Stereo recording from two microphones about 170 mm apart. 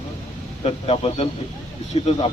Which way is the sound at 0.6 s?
35° left (ahead or behind).